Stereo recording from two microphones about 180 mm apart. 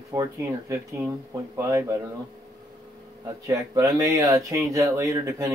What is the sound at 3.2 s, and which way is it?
Speech, 20° right (ahead or behind).